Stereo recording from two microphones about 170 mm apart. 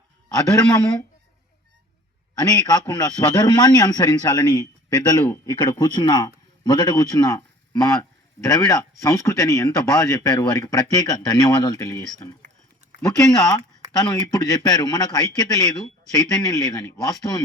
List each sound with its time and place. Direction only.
0.3 s speech: 20° left (ahead or behind)
2.4 s a man's voice: 20° left (ahead or behind)
13.1 s speech: 20° left (ahead or behind)